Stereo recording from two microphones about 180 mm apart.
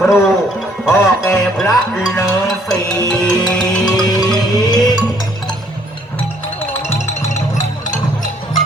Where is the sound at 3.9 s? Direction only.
20° left (ahead or behind).